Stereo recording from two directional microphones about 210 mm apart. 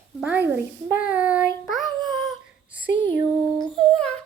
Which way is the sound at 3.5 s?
Centre (ahead or behind).